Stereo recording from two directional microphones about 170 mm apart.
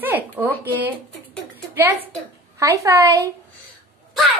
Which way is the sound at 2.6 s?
15° right (ahead or behind).